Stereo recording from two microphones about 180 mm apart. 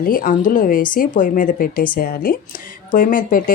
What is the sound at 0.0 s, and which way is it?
Speech, 50° left (ahead or behind).